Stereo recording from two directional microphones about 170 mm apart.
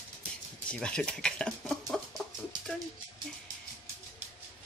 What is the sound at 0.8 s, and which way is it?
Speech, 5° left (ahead or behind).